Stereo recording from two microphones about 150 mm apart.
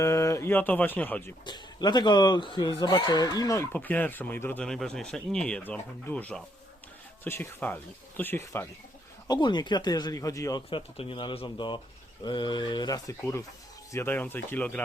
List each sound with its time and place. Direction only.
0.0 s speech: 20° left (ahead or behind)
1.5 s speech: 30° left (ahead or behind)
9.2 s speech: 30° left (ahead or behind)
10.7 s speech: 40° left (ahead or behind); by 14.8 s 10° left (ahead or behind)